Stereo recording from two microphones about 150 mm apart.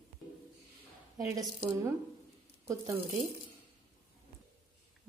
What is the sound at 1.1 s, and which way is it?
Speech, 20° right (ahead or behind).